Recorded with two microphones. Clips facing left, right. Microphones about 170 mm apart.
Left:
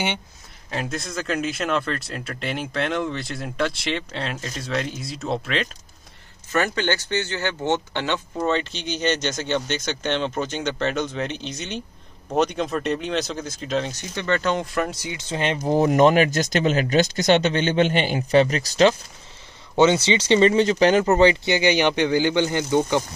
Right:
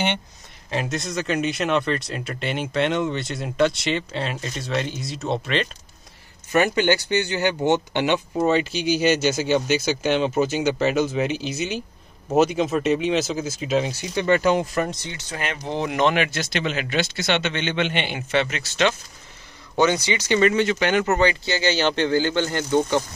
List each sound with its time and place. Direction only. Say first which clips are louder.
0.7 s speech: right 2 dB; centre (ahead or behind)
6.5 s speech: right 4 dB; 15° right (ahead or behind); by 15.7 s 25° left (ahead or behind)
15.7 s speech: left 5 dB; 40° left (ahead or behind)
19.7 s speech: left 3 dB; 25° left (ahead or behind)